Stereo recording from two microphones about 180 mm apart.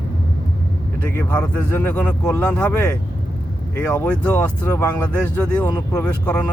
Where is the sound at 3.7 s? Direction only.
10° left (ahead or behind).